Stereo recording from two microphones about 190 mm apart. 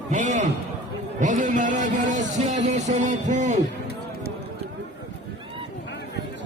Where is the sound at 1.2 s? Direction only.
40° right (ahead or behind).